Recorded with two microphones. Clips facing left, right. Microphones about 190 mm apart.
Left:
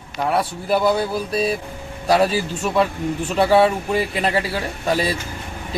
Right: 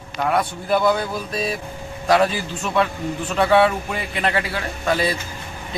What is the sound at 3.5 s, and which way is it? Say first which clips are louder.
Speech: left 1 dB; 35° left (ahead or behind).